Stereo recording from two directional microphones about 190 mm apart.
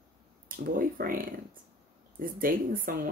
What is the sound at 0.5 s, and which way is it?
Speech, 50° right (ahead or behind).